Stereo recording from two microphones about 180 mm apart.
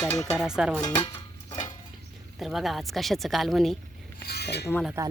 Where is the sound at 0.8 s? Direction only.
20° left (ahead or behind).